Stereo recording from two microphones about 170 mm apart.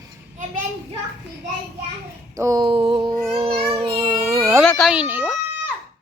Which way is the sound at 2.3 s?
20° right (ahead or behind).